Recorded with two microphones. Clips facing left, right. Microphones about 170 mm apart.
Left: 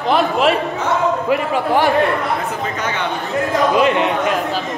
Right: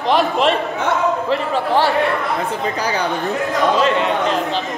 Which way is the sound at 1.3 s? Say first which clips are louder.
Left 2 dB; 10° left (ahead or behind).